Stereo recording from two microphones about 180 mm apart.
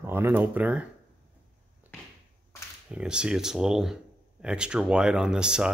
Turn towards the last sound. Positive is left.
turn(degrees=-5)  # may be behind; listen again after turning